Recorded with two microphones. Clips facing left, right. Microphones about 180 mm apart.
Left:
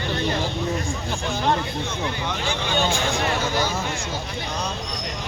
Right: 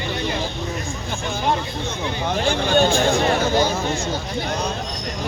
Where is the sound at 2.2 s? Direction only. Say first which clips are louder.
Right 6 dB; 45° right (ahead or behind).